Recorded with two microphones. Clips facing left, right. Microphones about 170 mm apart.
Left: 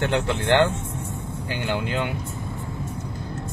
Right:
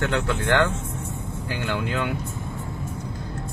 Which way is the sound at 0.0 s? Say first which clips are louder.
Left 1 dB; 30° left (ahead or behind).